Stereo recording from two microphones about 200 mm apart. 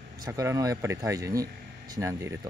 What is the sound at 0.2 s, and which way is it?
Speech, 15° right (ahead or behind).